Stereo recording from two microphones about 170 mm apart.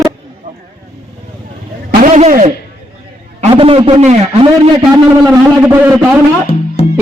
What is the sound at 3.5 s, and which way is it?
Speech, 30° right (ahead or behind).